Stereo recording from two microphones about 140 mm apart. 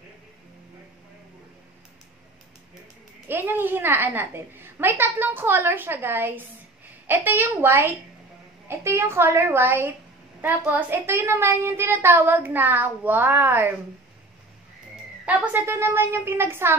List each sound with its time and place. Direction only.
3.3 s a woman's voice: 15° right (ahead or behind)
15.2 s a woman's voice: 10° right (ahead or behind)